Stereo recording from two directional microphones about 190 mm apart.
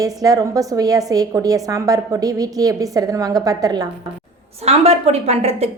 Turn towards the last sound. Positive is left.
turn(degrees=-35)  # may be behind; listen again after turning